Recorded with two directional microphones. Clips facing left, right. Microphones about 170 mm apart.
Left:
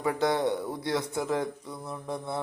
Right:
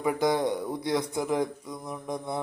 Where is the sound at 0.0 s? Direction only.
15° right (ahead or behind).